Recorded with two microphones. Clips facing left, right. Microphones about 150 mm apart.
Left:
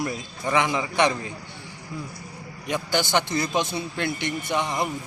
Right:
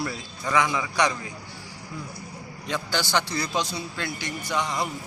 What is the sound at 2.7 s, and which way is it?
A man's voice, 20° left (ahead or behind).